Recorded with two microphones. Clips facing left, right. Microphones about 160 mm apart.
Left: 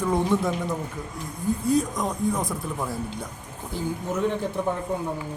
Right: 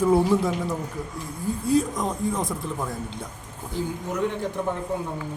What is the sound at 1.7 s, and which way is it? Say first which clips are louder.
Speech: right 2 dB; centre (ahead or behind).